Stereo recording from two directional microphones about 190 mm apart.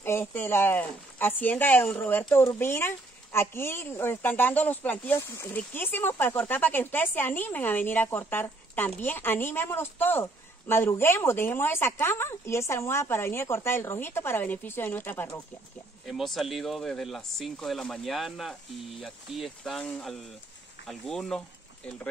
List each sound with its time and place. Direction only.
0.0 s speech: 10° left (ahead or behind)
16.1 s speech: centre (ahead or behind)